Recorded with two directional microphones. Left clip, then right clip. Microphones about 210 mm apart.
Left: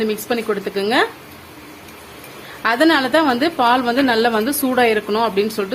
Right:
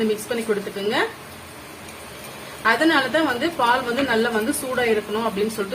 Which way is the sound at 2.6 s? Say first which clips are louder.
Left 3 dB; 50° left (ahead or behind).